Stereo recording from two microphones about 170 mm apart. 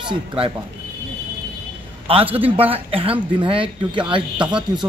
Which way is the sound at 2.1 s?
35° right (ahead or behind).